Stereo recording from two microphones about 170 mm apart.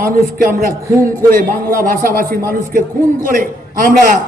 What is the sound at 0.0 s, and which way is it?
A man's voice, 60° right (ahead or behind).